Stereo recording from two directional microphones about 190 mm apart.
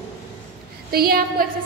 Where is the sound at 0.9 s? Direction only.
50° right (ahead or behind).